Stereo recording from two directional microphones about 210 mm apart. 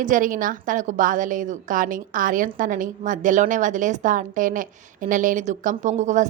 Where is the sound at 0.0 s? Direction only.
40° right (ahead or behind).